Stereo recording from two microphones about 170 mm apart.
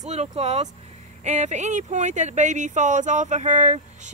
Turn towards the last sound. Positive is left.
turn(degrees=-45)  # may be behind; listen again after turning